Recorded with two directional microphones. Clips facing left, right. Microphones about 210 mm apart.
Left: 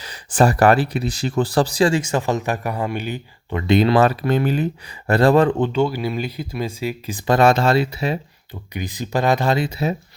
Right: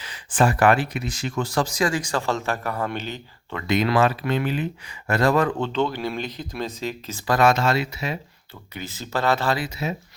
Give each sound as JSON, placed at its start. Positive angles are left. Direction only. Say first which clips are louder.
{"t": 0.0, "sound": "speech", "louder": "left 4 dB", "side_deg": 40}
{"t": 3.6, "sound": "speech", "louder": "left 5 dB", "side_deg": 30}
{"t": 5.5, "sound": "speech", "louder": "left 5 dB", "side_deg": 15}
{"t": 8.7, "sound": "speech", "louder": "left 5 dB", "side_deg": 15}
{"t": 9.6, "sound": "speech", "louder": "left 6 dB", "side_deg": 35}